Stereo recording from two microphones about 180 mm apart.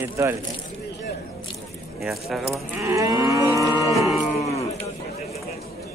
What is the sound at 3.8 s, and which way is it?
Moo, 20° left (ahead or behind).